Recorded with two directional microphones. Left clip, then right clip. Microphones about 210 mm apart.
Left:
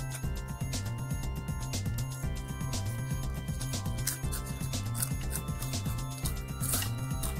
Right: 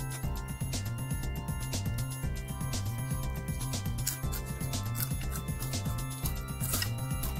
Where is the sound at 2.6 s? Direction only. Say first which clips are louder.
Even; centre (ahead or behind).